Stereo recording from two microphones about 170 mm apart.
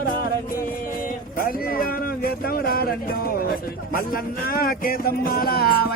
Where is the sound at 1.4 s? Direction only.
55° left (ahead or behind).